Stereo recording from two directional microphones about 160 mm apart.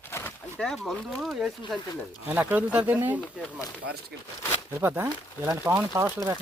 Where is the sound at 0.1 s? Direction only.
15° left (ahead or behind).